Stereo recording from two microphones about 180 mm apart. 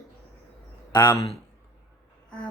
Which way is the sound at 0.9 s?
25° left (ahead or behind).